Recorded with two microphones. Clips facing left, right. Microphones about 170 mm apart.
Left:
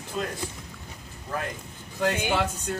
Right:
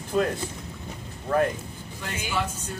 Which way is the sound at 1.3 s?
60° right (ahead or behind).